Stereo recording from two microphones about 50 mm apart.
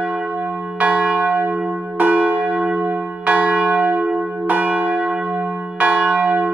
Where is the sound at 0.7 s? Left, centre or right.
Right.